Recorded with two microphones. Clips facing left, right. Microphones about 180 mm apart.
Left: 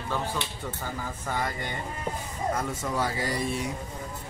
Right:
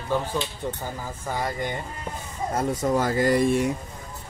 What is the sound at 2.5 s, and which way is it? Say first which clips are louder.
Speech: right 10 dB; 45° right (ahead or behind).